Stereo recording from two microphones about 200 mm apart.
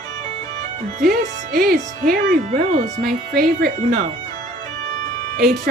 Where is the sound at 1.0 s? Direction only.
50° right (ahead or behind).